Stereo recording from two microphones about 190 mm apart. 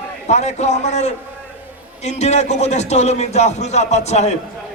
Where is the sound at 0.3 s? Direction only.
35° left (ahead or behind).